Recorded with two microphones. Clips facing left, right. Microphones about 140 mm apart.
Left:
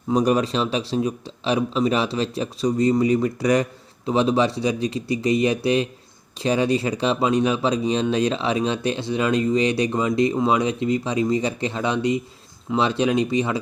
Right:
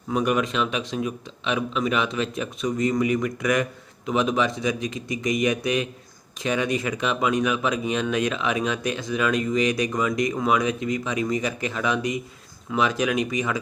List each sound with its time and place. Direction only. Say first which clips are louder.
0.1 s speech: left 4 dB; 35° left (ahead or behind)